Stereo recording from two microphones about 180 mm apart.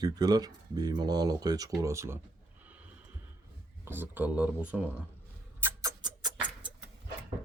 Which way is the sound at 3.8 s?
10° right (ahead or behind).